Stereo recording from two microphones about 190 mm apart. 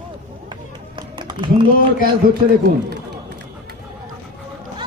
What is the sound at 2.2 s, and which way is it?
Speech, 50° right (ahead or behind).